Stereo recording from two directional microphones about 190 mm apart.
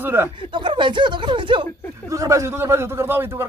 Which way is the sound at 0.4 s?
25° right (ahead or behind).